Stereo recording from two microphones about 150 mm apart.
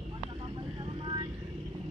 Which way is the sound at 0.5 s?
30° right (ahead or behind).